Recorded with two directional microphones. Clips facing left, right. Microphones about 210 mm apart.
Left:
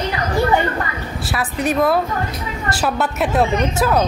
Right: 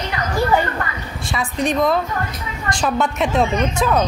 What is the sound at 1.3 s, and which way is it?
A woman's voice, 5° left (ahead or behind).